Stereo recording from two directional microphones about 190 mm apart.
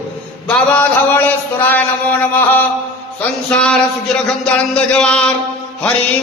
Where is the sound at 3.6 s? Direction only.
5° left (ahead or behind).